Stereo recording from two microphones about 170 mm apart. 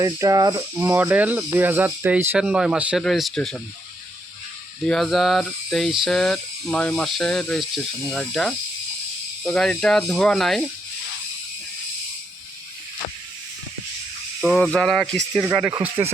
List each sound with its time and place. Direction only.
0.0 s speech: 20° right (ahead or behind)
0.8 s speech: 10° right (ahead or behind)
4.9 s speech: centre (ahead or behind)
14.4 s speech: centre (ahead or behind)